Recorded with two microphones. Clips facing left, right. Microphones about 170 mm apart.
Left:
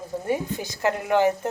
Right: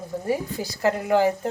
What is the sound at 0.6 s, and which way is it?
Speech, 35° right (ahead or behind).